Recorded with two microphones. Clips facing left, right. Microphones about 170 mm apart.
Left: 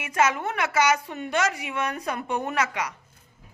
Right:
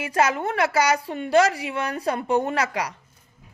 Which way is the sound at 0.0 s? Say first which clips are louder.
Right 2 dB; 35° right (ahead or behind).